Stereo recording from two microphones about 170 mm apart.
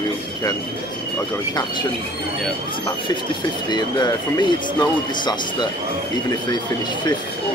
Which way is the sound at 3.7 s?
25° left (ahead or behind).